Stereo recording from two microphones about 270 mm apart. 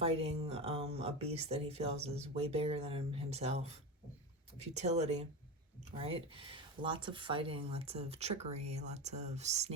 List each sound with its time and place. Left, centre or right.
0.0 s speech: right